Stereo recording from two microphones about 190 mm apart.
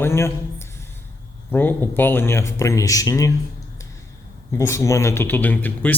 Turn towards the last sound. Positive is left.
turn(degrees=10)  # may be behind; listen again after turning